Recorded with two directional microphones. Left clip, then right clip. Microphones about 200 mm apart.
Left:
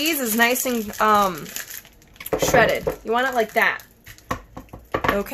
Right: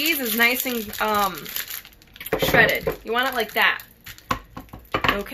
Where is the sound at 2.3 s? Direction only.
55° left (ahead or behind).